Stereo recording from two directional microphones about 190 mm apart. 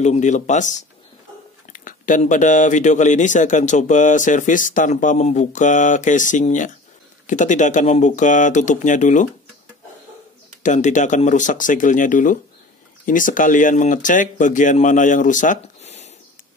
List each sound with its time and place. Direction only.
0.0 s speech: 40° left (ahead or behind)
10.6 s speech: 40° left (ahead or behind)